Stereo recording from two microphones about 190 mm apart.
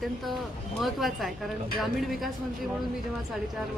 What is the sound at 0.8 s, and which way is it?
A woman's voice, centre (ahead or behind).